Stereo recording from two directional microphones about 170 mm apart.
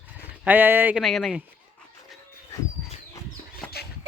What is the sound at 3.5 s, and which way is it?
Chicken, 65° left (ahead or behind).